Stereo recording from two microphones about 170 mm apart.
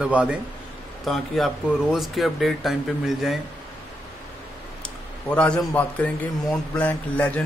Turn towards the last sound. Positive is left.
turn(degrees=10)  # may be behind; listen again after turning